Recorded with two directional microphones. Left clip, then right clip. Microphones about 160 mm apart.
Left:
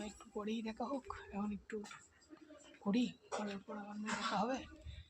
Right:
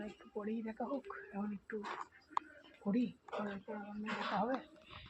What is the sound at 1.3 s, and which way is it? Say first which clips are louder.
Speech: even; 20° left (ahead or behind).